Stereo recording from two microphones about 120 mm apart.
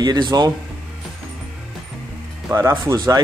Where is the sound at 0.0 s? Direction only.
35° right (ahead or behind).